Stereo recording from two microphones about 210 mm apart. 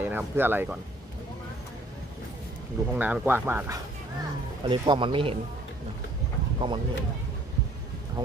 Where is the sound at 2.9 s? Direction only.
10° right (ahead or behind).